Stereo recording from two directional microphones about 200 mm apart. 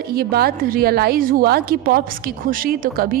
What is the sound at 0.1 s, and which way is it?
A woman's voice, 50° right (ahead or behind).